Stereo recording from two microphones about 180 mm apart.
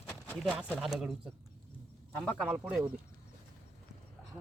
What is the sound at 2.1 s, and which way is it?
Speech, 10° left (ahead or behind).